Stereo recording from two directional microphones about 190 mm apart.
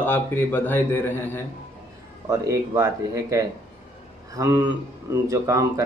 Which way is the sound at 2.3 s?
15° right (ahead or behind).